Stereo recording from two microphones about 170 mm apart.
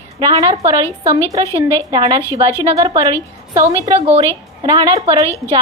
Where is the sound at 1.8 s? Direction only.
25° right (ahead or behind).